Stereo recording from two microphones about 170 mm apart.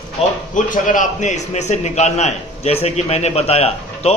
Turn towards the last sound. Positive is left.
turn(degrees=35)  # may be behind; listen again after turning